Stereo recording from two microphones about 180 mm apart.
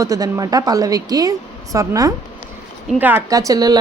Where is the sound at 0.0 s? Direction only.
20° right (ahead or behind).